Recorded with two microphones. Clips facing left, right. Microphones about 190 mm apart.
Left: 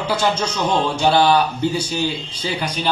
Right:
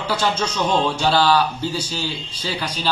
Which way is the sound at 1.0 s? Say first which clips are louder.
Left 4 dB; 20° left (ahead or behind).